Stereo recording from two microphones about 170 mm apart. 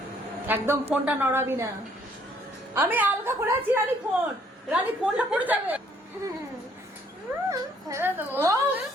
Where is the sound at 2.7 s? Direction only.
10° right (ahead or behind).